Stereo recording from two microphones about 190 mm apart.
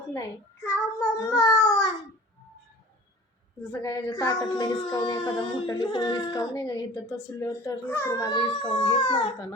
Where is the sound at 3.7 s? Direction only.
20° left (ahead or behind).